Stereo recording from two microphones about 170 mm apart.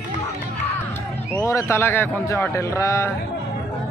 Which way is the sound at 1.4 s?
15° left (ahead or behind).